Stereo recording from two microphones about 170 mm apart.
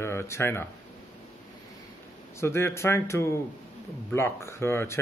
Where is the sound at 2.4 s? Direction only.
15° left (ahead or behind).